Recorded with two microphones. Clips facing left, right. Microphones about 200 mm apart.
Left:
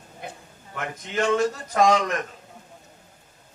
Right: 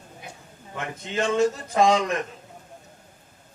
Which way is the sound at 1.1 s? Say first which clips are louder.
Even; 20° right (ahead or behind).